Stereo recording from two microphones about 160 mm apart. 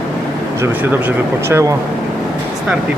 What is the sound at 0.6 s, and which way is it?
Speech, 15° right (ahead or behind).